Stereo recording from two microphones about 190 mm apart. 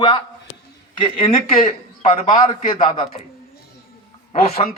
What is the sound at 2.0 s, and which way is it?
Speech, 40° left (ahead or behind).